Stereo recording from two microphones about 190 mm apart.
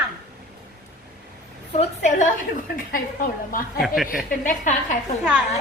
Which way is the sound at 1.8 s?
40° left (ahead or behind).